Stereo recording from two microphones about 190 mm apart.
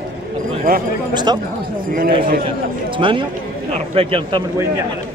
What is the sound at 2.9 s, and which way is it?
Speech, 25° right (ahead or behind).